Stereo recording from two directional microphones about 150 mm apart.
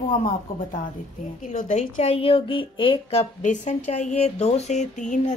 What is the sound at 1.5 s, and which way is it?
Speech, 60° left (ahead or behind).